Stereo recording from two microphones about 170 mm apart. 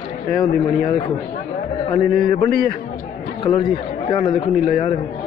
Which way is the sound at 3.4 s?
30° left (ahead or behind).